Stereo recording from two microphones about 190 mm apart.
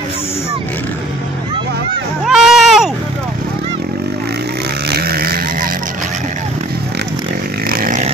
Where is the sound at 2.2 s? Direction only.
5° right (ahead or behind).